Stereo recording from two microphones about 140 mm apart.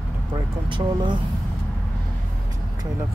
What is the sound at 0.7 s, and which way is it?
Speech, 35° right (ahead or behind).